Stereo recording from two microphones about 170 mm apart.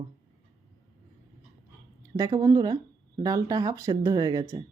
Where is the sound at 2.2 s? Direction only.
20° right (ahead or behind).